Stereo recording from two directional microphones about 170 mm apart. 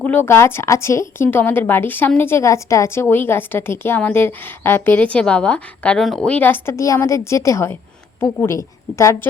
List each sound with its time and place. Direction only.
0.0 s a woman's voice: 10° left (ahead or behind)